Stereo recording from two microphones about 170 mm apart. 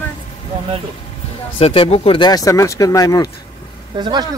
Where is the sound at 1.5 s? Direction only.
35° left (ahead or behind).